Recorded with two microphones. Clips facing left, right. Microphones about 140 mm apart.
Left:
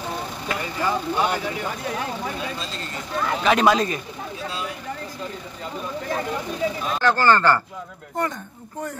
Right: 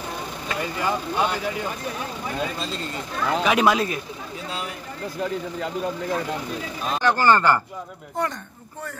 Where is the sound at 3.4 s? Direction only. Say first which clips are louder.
Left 2 dB; 10° right (ahead or behind).